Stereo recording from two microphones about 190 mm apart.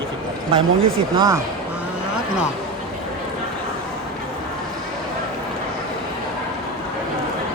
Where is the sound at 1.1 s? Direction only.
20° right (ahead or behind).